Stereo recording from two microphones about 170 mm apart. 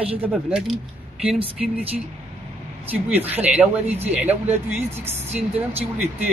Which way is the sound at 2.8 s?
10° right (ahead or behind).